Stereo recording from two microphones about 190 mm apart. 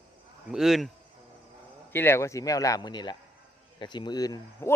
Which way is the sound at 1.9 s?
10° left (ahead or behind).